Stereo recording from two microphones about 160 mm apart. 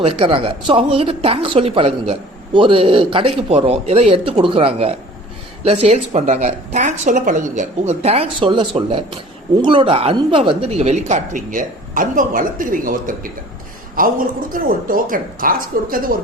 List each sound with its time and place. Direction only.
0.0 s speech: 35° right (ahead or behind); by 16.0 s 60° right (ahead or behind)